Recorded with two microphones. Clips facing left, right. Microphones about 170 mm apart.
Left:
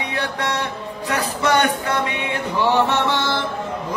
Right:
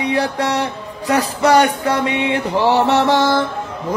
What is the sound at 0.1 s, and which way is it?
Music, 30° right (ahead or behind).